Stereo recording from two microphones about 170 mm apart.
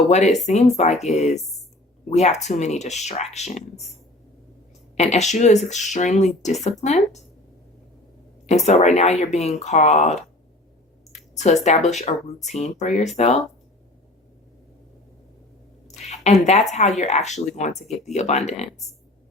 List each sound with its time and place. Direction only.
0.1 s speech: 40° left (ahead or behind)
4.9 s speech: 40° left (ahead or behind)
8.4 s speech: 40° left (ahead or behind)
11.1 s a sound: 45° left (ahead or behind)
11.6 s speech: 40° left (ahead or behind)
15.9 s speech: 40° left (ahead or behind)